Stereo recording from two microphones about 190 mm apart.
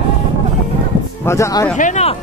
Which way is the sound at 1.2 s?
15° left (ahead or behind).